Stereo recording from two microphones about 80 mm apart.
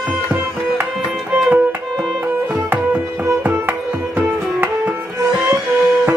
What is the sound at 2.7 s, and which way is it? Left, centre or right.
Music, centre.